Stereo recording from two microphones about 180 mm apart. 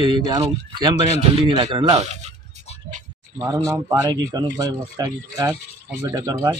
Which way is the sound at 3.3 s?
20° right (ahead or behind).